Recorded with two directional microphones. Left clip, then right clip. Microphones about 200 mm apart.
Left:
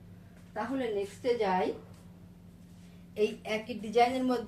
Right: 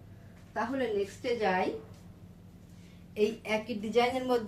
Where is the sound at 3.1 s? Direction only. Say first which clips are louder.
Right 1 dB; 40° right (ahead or behind).